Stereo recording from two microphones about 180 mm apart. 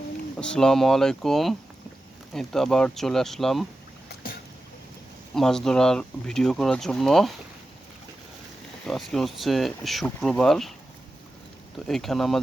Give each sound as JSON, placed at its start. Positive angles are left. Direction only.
{"t": 0.3, "sound": "speech", "side_deg": 5}
{"t": 4.1, "sound": "boat", "side_deg": 55}
{"t": 5.3, "sound": "speech", "side_deg": 5}
{"t": 8.9, "sound": "speech", "side_deg": 0}
{"t": 11.9, "sound": "speech", "side_deg": 0}